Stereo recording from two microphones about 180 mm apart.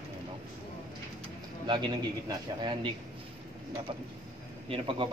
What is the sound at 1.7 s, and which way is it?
Speech, 25° right (ahead or behind).